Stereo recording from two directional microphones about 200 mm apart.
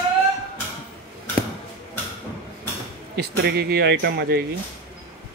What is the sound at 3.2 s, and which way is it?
Speech, 50° right (ahead or behind).